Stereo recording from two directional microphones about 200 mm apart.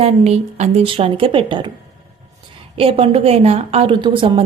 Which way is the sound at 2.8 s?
30° right (ahead or behind).